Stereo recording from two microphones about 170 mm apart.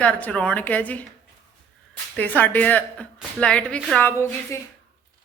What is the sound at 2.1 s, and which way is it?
Speech, 10° left (ahead or behind).